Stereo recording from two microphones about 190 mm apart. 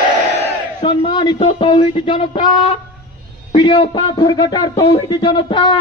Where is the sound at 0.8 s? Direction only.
25° left (ahead or behind).